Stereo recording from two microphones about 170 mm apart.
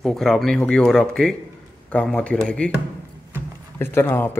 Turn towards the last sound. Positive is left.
turn(degrees=15)  # may be behind; listen again after turning